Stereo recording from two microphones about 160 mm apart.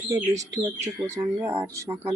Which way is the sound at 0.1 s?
20° right (ahead or behind).